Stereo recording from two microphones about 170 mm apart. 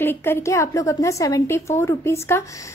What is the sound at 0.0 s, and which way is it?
A woman's voice, 10° left (ahead or behind).